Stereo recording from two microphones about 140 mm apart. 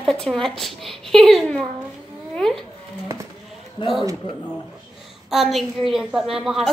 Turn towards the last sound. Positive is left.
turn(degrees=0)  # may be behind; listen again after turning